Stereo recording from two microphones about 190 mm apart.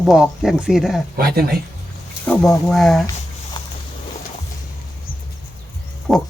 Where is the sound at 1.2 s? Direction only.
55° right (ahead or behind).